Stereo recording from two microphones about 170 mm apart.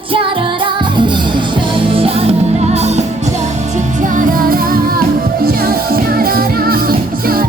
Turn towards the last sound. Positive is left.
turn(degrees=-60)  # may be behind; listen again after turning